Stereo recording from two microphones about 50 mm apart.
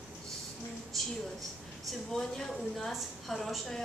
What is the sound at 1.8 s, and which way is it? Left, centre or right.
A woman's voice, centre.